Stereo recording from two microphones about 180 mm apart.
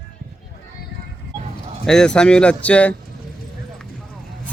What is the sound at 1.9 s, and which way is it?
Speech, 5° left (ahead or behind).